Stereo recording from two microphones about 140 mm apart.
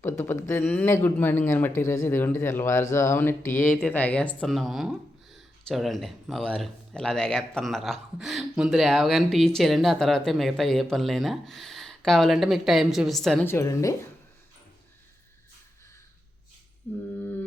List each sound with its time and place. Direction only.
0.0 s speech: 15° left (ahead or behind); by 13.4 s centre (ahead or behind)
13.4 s a woman's voice: 20° left (ahead or behind)
16.9 s speech: 10° left (ahead or behind)